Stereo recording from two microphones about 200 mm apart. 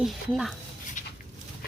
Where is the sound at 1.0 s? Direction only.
40° left (ahead or behind).